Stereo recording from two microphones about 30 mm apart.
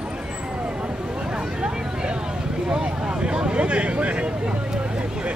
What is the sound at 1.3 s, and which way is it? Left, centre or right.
Vehicle, right.